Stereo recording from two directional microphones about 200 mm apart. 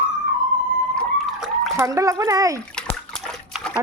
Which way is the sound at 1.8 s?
15° right (ahead or behind).